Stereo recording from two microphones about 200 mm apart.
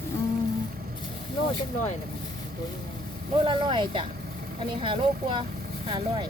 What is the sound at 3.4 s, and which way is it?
Speech, 25° right (ahead or behind).